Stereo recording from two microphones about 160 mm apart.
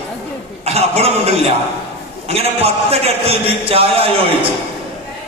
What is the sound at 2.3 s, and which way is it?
A man's voice, 40° right (ahead or behind).